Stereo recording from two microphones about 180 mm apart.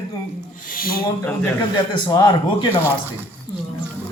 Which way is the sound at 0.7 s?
55° left (ahead or behind).